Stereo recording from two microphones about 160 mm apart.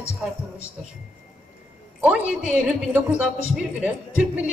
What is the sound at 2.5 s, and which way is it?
A woman's voice, 5° right (ahead or behind).